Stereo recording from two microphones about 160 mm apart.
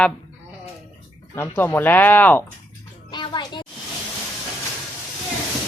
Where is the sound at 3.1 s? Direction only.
30° left (ahead or behind).